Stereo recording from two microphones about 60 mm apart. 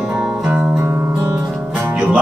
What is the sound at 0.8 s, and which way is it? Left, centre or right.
Music, right.